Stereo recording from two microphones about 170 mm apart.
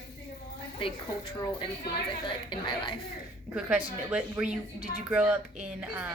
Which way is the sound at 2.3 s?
30° left (ahead or behind).